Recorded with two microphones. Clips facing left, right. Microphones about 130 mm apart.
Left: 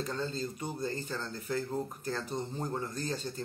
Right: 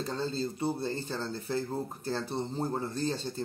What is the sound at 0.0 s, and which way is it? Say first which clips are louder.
Speech: right 2 dB; 30° right (ahead or behind).